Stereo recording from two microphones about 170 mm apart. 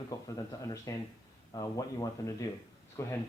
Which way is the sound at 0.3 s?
20° left (ahead or behind).